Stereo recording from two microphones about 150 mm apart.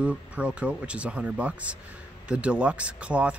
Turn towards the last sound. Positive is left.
turn(degrees=-10)  # may be behind; listen again after turning